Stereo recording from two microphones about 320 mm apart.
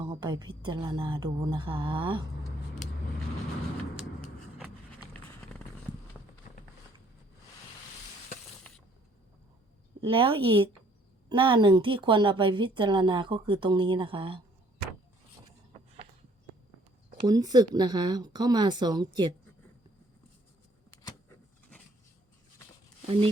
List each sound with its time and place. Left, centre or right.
0.0 s a woman's voice: centre
3.9 s a sound: centre
4.9 s run: centre
10.0 s a woman's voice: centre
17.2 s a woman's voice: centre
21.0 s a sound: centre